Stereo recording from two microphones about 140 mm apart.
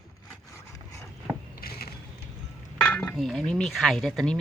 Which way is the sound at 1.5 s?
90° left.